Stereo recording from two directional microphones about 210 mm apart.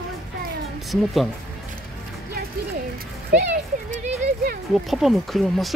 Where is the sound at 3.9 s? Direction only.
35° right (ahead or behind).